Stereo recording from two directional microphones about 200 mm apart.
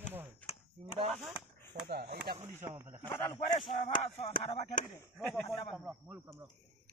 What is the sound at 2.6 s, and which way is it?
Speech, 10° right (ahead or behind).